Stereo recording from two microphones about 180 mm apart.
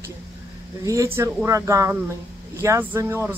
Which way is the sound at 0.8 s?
15° right (ahead or behind).